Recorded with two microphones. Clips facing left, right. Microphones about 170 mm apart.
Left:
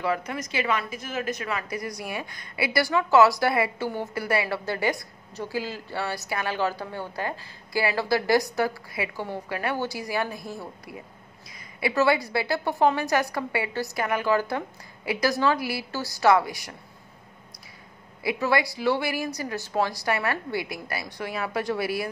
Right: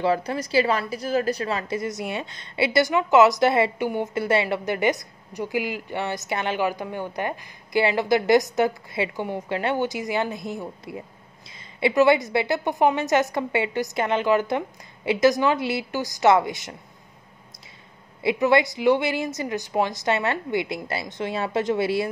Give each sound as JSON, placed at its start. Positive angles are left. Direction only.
{"t": 0.0, "sound": "a woman's voice", "side_deg": -30}
{"t": 18.2, "sound": "a woman's voice", "side_deg": -20}